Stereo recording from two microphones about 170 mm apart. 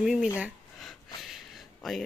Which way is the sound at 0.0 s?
Centre (ahead or behind).